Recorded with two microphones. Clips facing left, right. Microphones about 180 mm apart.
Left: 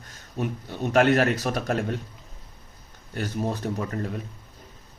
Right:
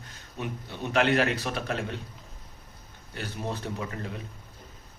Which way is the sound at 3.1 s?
45° left (ahead or behind).